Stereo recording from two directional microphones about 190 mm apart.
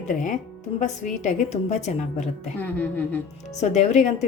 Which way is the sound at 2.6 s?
10° left (ahead or behind).